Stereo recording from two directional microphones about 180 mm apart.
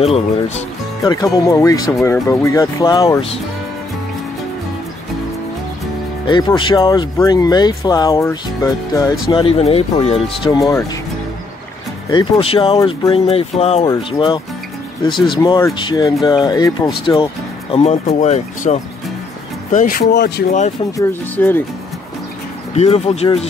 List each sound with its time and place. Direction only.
0.0 s speech: 35° left (ahead or behind)
1.0 s speech: 20° left (ahead or behind)
6.2 s speech: 25° left (ahead or behind)
9.3 s speech: 30° left (ahead or behind)
10.4 s speech: 20° left (ahead or behind)
12.1 s speech: 30° left (ahead or behind); by 20.4 s 65° left (ahead or behind)
21.0 s speech: 10° left (ahead or behind)
22.8 s speech: 35° left (ahead or behind)